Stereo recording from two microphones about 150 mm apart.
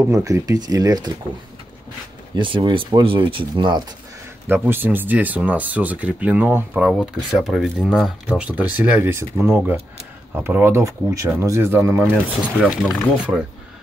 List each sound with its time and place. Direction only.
0.0 s speech: 20° right (ahead or behind)
2.3 s speech: 30° right (ahead or behind)
4.5 s speech: 15° right (ahead or behind)
12.5 s speech: 5° right (ahead or behind)